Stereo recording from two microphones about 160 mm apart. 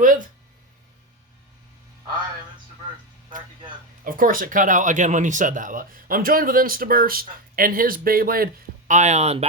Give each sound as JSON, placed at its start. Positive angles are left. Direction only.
{"t": 4.0, "sound": "speech", "side_deg": -60}
{"t": 8.9, "sound": "speech", "side_deg": -45}